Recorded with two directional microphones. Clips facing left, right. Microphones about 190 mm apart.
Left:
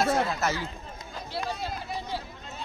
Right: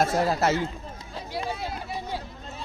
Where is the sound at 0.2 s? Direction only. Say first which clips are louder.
Right 5 dB; 35° right (ahead or behind).